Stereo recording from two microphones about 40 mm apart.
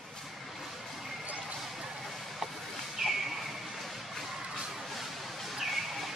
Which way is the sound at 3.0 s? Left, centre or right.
Centre.